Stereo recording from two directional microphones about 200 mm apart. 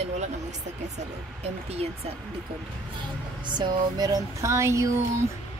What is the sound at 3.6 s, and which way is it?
Speech, 20° right (ahead or behind).